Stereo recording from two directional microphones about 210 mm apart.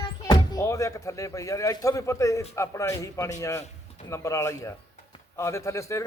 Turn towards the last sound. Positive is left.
turn(degrees=15)  # may be behind; listen again after turning